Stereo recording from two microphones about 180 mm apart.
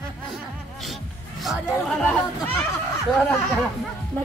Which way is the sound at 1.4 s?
Centre (ahead or behind).